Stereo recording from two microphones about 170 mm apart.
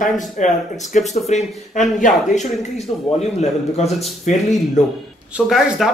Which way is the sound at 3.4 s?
40° left (ahead or behind).